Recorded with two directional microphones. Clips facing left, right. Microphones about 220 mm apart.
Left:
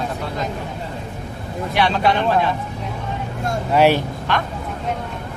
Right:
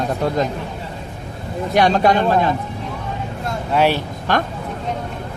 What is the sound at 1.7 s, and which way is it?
Speech, 45° right (ahead or behind).